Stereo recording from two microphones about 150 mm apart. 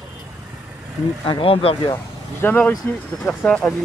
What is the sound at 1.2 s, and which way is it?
Speech, 35° left (ahead or behind).